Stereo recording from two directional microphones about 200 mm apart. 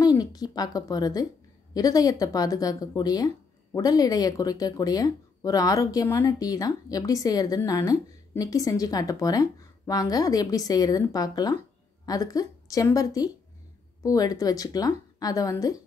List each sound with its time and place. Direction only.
0.0 s a woman's voice: 20° left (ahead or behind)